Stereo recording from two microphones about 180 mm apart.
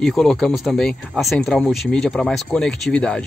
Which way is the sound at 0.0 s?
Centre (ahead or behind).